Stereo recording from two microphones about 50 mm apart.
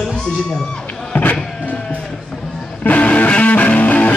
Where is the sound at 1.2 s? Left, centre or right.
Left.